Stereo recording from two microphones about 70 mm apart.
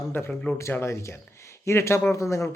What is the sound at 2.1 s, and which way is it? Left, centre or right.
Speech, left.